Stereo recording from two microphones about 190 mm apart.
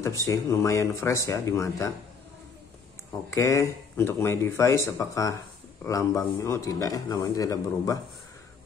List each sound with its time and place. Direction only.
0.0 s speech: 15° left (ahead or behind)
3.3 s speech: 15° left (ahead or behind)